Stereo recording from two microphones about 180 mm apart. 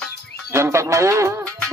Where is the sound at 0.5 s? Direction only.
15° right (ahead or behind).